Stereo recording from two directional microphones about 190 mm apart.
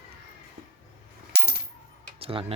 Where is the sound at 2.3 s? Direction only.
25° right (ahead or behind).